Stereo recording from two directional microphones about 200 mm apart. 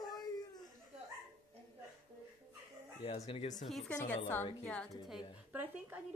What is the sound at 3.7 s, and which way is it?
Speech, centre (ahead or behind).